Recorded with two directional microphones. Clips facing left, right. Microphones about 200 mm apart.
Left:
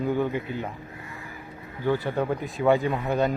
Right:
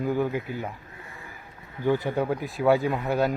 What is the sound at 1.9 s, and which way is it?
Speech, 15° right (ahead or behind).